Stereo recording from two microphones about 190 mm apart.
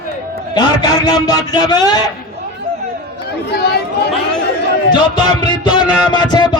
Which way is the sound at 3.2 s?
60° left (ahead or behind).